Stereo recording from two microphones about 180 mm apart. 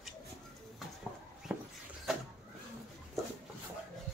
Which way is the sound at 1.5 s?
10° right (ahead or behind).